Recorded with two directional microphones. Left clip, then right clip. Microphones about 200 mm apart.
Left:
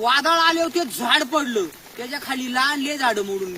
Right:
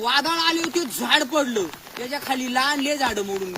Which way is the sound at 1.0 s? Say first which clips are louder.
Even; 10° right (ahead or behind).